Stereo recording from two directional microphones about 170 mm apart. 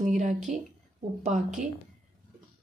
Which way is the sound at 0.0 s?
45° right (ahead or behind).